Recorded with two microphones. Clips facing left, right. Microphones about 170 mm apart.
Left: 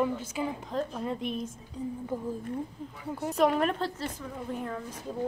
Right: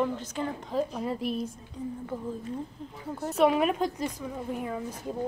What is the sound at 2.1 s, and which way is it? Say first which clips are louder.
Speech: left 3 dB; 10° left (ahead or behind).